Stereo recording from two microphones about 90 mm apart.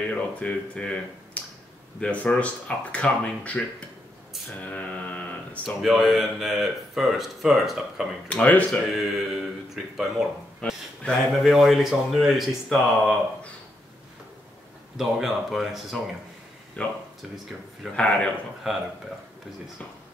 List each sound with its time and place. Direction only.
0.0 s speech: 15° left (ahead or behind)
4.6 s mantra: 15° left (ahead or behind)
5.8 s speech: centre (ahead or behind)
8.3 s speech: 15° left (ahead or behind)
8.9 s speech: centre (ahead or behind)
10.7 s speech: centre (ahead or behind)
15.0 s speech: 5° right (ahead or behind)
16.8 s speech: 15° left (ahead or behind)
17.9 s speech: 15° left (ahead or behind)
18.6 s speech: 5° right (ahead or behind)